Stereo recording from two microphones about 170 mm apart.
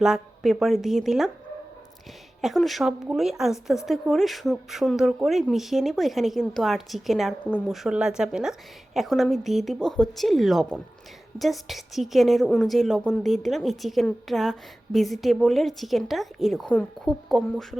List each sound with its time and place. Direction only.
0.0 s speech: 5° right (ahead or behind)
2.4 s speech: centre (ahead or behind)